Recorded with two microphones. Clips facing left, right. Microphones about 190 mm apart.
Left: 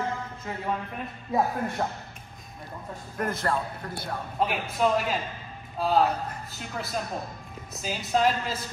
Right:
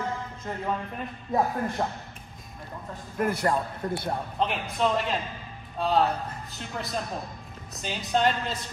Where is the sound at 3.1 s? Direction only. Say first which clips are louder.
Right 3 dB; 10° right (ahead or behind).